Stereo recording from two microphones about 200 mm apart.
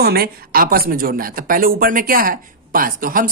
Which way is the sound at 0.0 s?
50° right (ahead or behind).